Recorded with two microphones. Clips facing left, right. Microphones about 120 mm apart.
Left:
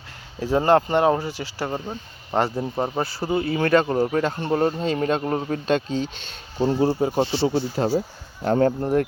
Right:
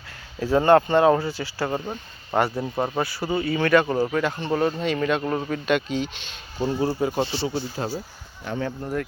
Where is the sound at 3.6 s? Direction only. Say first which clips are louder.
Even; 35° left (ahead or behind).